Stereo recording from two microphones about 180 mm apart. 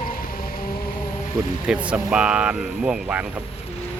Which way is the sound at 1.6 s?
5° right (ahead or behind).